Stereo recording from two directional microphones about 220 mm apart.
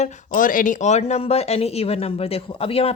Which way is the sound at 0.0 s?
35° left (ahead or behind).